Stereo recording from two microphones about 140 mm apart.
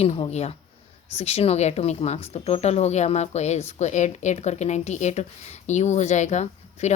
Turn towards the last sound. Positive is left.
turn(degrees=55)  # may be behind; listen again after turning